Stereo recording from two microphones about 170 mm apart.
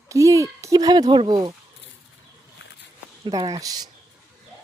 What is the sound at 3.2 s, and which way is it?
Speech, 25° right (ahead or behind).